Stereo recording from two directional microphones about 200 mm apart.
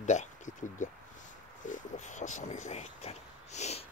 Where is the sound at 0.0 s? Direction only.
35° left (ahead or behind).